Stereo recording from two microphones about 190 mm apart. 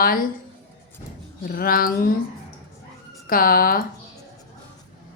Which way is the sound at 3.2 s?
50° left (ahead or behind).